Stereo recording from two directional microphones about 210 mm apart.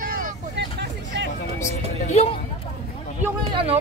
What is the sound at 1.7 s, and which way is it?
Speech, 30° left (ahead or behind).